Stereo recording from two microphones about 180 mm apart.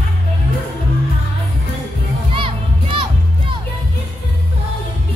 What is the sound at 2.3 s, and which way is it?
Music, 30° right (ahead or behind).